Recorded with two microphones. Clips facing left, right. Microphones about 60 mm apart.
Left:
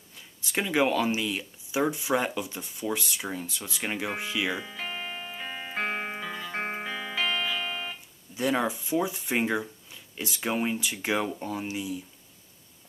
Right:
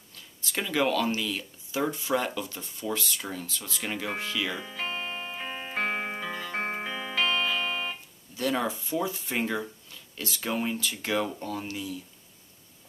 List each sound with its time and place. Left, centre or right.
0.1 s speech: centre
4.8 s music: centre
5.2 s music: centre
5.8 s music: centre
8.4 s speech: centre